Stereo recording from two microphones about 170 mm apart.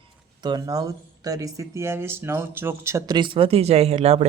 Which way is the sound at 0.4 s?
25° right (ahead or behind).